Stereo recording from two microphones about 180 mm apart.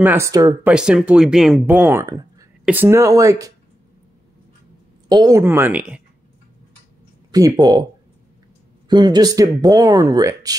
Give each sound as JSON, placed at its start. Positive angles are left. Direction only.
{"t": 0.0, "sound": "speech", "side_deg": -15}
{"t": 0.7, "sound": "speech", "side_deg": -5}
{"t": 5.0, "sound": "speech", "side_deg": -20}
{"t": 5.4, "sound": "speech", "side_deg": -10}
{"t": 7.2, "sound": "speech", "side_deg": -20}
{"t": 8.8, "sound": "speech", "side_deg": -25}